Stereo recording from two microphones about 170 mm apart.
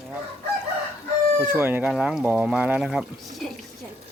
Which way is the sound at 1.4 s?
10° right (ahead or behind).